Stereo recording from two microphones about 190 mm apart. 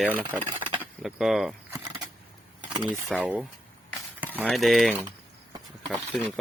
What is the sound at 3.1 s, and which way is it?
Speech, centre (ahead or behind).